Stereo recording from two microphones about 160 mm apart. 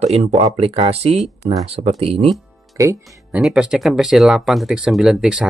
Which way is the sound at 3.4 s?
5° right (ahead or behind).